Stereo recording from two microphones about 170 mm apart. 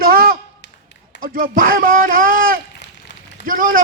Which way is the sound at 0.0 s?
60° right (ahead or behind).